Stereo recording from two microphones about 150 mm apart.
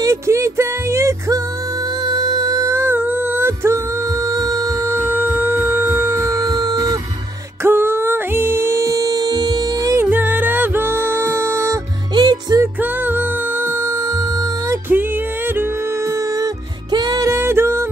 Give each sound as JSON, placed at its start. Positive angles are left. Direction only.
{"t": 0.0, "sound": "music", "side_deg": -20}
{"t": 12.8, "sound": "music", "side_deg": -10}
{"t": 16.9, "sound": "music", "side_deg": -25}